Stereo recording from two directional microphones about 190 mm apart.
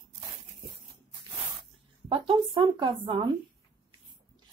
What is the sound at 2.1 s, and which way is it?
Speech, 25° right (ahead or behind).